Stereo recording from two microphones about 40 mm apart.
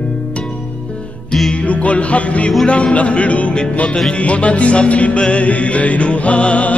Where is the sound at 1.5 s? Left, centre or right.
Left.